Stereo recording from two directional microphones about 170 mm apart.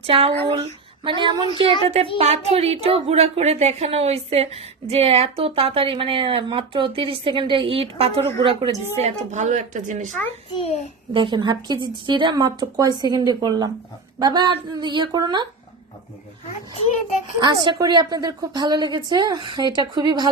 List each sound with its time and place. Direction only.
0.0 s a woman's voice: 30° right (ahead or behind)
10.6 s a child's voice: 40° left (ahead or behind)
11.1 s a woman's voice: 30° right (ahead or behind)
17.4 s a woman's voice: 25° right (ahead or behind)